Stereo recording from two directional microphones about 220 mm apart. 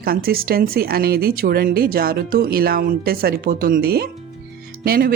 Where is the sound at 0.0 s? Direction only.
45° right (ahead or behind).